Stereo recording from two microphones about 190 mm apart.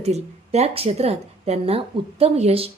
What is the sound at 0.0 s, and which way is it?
A woman's voice, 35° right (ahead or behind).